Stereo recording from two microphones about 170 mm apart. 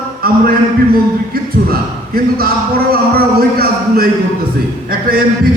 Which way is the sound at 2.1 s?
60° right (ahead or behind).